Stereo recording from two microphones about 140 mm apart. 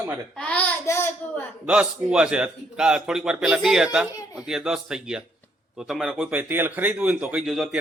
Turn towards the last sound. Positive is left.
turn(degrees=0)  # may be behind; listen again after turning